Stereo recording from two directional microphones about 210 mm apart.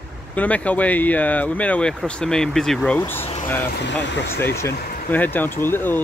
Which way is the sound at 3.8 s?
55° left (ahead or behind).